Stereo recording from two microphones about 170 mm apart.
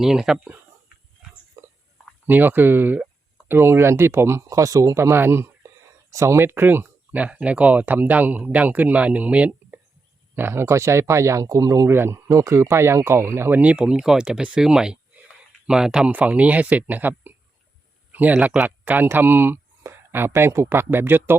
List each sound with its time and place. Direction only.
0.0 s speech: 5° right (ahead or behind)
1.6 s a sound: 20° right (ahead or behind)
2.2 s speech: 10° right (ahead or behind)